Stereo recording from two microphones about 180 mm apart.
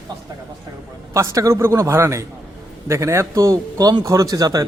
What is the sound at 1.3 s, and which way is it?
A man's voice, 15° right (ahead or behind).